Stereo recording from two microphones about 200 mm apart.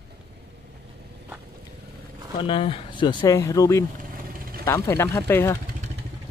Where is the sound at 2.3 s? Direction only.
25° left (ahead or behind).